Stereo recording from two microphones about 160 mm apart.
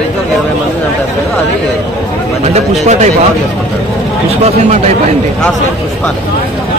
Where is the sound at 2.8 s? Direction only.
45° right (ahead or behind).